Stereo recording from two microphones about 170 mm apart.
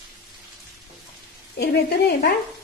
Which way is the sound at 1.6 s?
70° left (ahead or behind).